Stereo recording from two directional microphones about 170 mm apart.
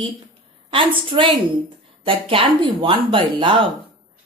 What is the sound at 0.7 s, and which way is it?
A woman's voice, 30° right (ahead or behind).